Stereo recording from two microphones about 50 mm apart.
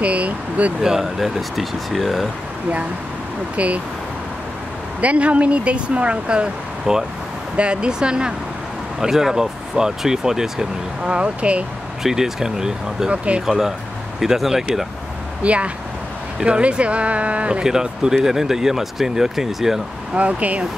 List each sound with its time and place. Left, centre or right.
0.0 s vehicle: right
0.8 s speech: centre
3.5 s speech: right
5.0 s speech: right; by 11.1 s centre
11.1 s speech: right
12.0 s speech: centre
13.1 s speech: right
13.5 s speech: centre
15.4 s speech: right; by 19.8 s centre
20.2 s speech: right